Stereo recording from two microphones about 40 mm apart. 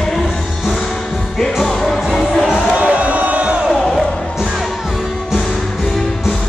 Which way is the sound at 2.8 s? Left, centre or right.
Right.